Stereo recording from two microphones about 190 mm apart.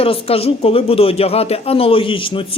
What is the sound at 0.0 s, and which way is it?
Speech, 30° left (ahead or behind).